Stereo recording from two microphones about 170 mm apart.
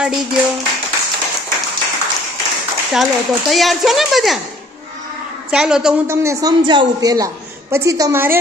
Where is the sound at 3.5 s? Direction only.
Centre (ahead or behind).